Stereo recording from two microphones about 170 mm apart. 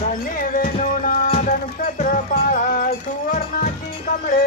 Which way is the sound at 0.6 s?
50° left (ahead or behind).